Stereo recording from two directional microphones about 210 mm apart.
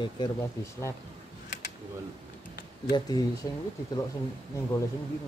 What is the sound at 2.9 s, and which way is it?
Speech, 20° left (ahead or behind).